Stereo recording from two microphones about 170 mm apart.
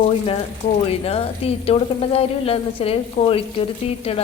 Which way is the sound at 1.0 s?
35° left (ahead or behind).